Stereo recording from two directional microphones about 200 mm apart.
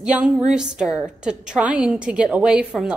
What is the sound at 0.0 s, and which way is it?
A woman's voice, 5° right (ahead or behind).